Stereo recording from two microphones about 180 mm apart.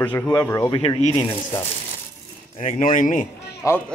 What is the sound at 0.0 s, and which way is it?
Speech, 10° left (ahead or behind).